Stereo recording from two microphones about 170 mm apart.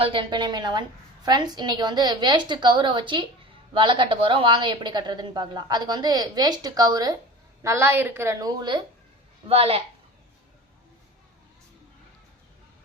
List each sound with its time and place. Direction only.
0.0 s a woman's voice: 30° right (ahead or behind)